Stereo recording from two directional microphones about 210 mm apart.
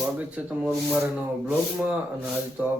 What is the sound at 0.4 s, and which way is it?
Speech, 5° right (ahead or behind).